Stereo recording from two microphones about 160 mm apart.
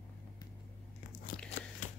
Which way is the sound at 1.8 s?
55° left (ahead or behind).